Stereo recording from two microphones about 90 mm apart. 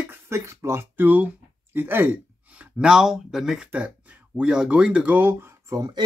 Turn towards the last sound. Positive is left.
turn(degrees=-45)  # may be behind; listen again after turning